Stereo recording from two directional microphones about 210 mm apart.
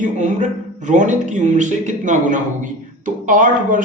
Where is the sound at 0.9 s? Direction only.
35° right (ahead or behind).